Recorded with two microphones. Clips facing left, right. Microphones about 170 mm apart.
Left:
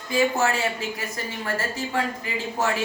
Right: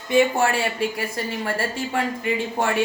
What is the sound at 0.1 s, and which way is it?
A man's voice, 25° right (ahead or behind).